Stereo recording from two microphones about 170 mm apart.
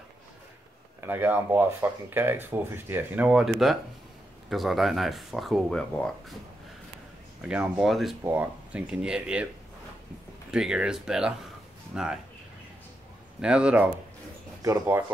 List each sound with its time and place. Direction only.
1.0 s speech: 10° right (ahead or behind); by 6.1 s 5° left (ahead or behind)
7.4 s speech: 5° right (ahead or behind)
10.5 s speech: 5° right (ahead or behind)
13.4 s speech: 5° right (ahead or behind)